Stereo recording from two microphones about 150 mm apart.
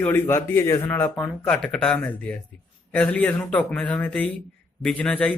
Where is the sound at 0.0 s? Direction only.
15° left (ahead or behind).